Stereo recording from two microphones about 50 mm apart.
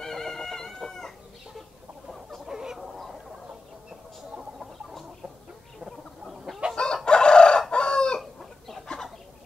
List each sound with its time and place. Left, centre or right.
0.0 s chicken: centre
2.0 s chicken: centre
2.8 s goose: centre
5.9 s chicken: centre
6.7 s chicken: centre
8.2 s chicken: centre